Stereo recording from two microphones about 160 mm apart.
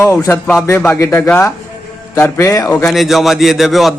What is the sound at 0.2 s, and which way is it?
A man's voice, 15° left (ahead or behind).